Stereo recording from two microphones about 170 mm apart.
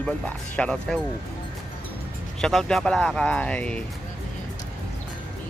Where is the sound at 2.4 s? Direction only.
5° left (ahead or behind).